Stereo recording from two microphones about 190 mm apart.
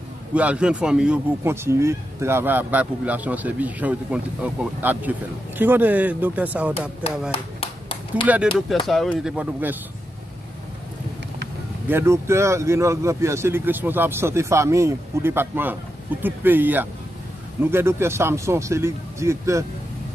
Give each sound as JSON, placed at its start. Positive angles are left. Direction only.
{"t": 0.3, "sound": "speech", "side_deg": -5}
{"t": 7.0, "sound": "a sound", "side_deg": 30}
{"t": 8.8, "sound": "speech", "side_deg": 0}
{"t": 11.9, "sound": "speech", "side_deg": -15}